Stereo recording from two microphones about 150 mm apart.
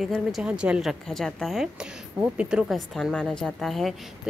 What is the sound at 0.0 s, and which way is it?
A woman's voice, centre (ahead or behind).